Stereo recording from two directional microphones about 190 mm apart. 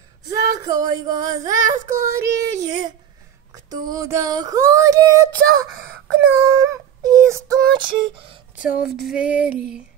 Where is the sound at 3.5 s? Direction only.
20° right (ahead or behind).